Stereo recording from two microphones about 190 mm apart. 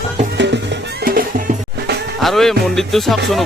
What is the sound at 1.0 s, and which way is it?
Music, 50° right (ahead or behind).